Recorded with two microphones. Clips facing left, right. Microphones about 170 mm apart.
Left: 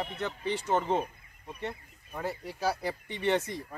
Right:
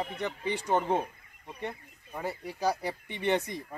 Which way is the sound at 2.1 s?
15° right (ahead or behind).